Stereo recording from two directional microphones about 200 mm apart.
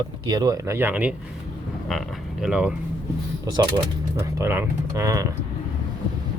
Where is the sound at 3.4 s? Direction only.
25° right (ahead or behind).